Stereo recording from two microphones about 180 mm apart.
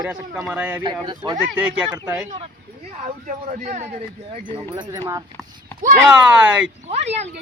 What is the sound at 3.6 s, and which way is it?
Speech, 45° right (ahead or behind).